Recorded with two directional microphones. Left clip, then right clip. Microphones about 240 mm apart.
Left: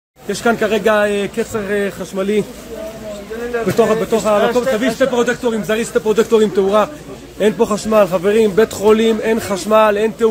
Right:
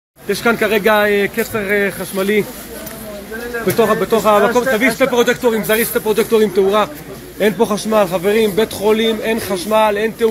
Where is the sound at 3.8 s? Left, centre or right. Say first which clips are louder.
Right 1 dB; centre.